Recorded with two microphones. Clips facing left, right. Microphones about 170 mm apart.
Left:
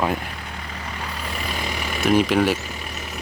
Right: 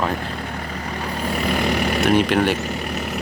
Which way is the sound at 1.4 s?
55° right (ahead or behind).